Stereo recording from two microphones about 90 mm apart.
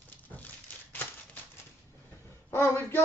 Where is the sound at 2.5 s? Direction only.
25° left (ahead or behind).